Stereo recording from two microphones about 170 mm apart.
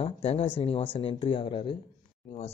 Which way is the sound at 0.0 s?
35° left (ahead or behind).